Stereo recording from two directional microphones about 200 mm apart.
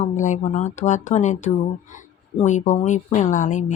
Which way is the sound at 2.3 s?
35° left (ahead or behind).